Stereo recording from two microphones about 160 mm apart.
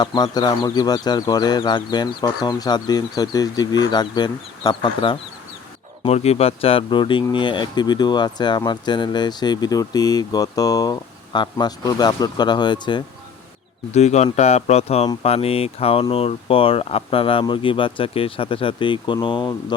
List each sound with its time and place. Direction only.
0.0 s speech: 25° left (ahead or behind)
13.9 s speech: 45° left (ahead or behind)